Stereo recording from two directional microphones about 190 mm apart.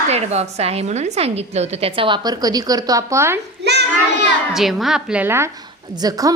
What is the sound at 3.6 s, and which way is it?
Child singing, 60° right (ahead or behind).